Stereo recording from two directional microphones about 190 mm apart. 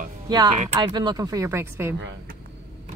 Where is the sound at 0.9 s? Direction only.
20° right (ahead or behind).